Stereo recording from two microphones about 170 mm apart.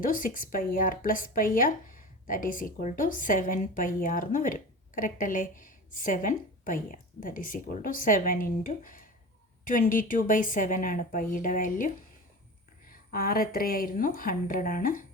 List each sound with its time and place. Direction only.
0.0 s a woman's voice: 55° left (ahead or behind)
13.1 s speech: 60° left (ahead or behind)